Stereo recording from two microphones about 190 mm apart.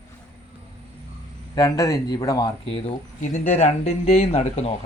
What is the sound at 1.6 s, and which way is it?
Speech, 20° left (ahead or behind).